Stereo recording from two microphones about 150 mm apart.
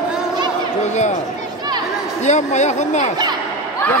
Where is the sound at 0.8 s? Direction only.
50° left (ahead or behind).